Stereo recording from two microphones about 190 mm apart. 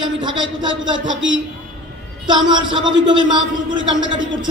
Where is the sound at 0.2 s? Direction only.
25° right (ahead or behind).